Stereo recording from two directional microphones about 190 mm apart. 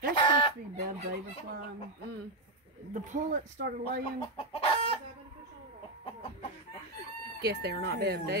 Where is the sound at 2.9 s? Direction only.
40° right (ahead or behind).